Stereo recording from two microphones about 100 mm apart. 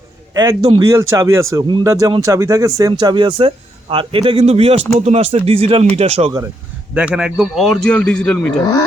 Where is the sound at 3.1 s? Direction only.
55° right (ahead or behind).